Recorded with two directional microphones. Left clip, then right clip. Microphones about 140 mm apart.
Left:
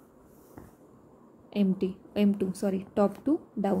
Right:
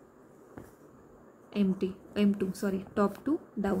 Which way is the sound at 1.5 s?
15° left (ahead or behind).